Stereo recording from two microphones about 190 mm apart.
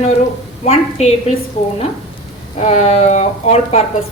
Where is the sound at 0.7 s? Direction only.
35° left (ahead or behind).